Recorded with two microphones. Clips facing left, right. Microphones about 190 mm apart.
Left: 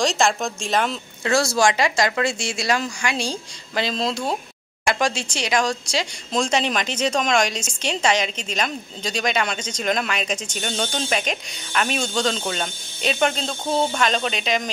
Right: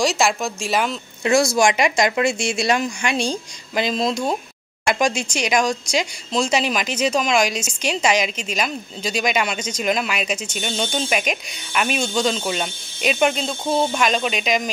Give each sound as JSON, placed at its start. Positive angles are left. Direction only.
{"t": 0.0, "sound": "a woman's voice", "side_deg": -5}